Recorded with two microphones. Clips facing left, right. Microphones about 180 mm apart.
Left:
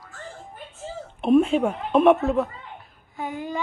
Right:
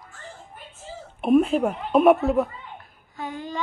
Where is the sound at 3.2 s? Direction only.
10° left (ahead or behind).